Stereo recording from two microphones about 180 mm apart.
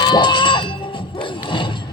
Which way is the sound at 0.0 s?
25° left (ahead or behind).